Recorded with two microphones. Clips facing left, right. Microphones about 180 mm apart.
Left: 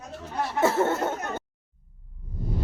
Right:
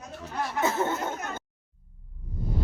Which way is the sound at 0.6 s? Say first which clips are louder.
Left 5 dB; 75° left (ahead or behind).